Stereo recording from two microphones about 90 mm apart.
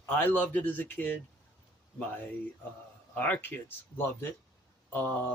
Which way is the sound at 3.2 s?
20° left (ahead or behind).